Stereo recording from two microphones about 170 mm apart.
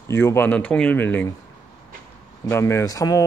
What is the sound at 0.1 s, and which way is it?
Speech, 15° left (ahead or behind).